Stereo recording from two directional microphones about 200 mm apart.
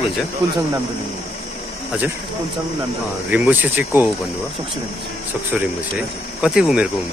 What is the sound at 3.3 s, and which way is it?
Speech, 5° right (ahead or behind).